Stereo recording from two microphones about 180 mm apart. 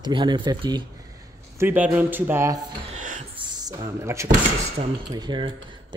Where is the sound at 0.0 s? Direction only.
25° right (ahead or behind).